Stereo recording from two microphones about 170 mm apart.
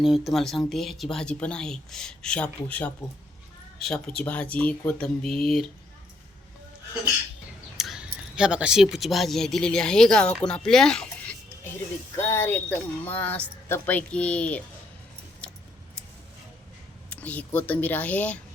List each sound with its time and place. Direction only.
0.0 s speech: centre (ahead or behind)
7.8 s speech: 5° right (ahead or behind)
10.4 s a sound: 5° left (ahead or behind)
12.1 s speech: 15° left (ahead or behind)
17.1 s speech: 10° left (ahead or behind)